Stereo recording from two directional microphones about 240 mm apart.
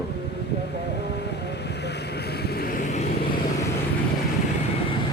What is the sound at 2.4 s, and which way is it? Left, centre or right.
Vehicle, left.